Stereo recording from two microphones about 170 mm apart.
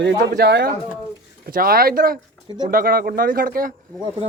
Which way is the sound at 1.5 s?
60° right (ahead or behind).